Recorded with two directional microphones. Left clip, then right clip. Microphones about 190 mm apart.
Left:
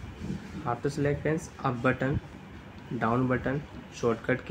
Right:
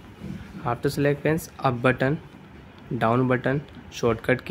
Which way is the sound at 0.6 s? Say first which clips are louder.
Right 6 dB; 55° right (ahead or behind).